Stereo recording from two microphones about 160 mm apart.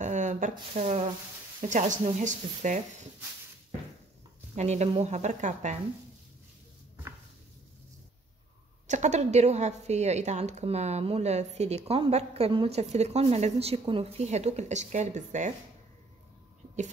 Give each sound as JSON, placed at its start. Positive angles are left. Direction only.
{"t": 0.0, "sound": "a sound", "side_deg": -50}
{"t": 1.7, "sound": "a woman's voice", "side_deg": -50}
{"t": 4.6, "sound": "a woman's voice", "side_deg": -45}
{"t": 8.8, "sound": "a woman's voice", "side_deg": -45}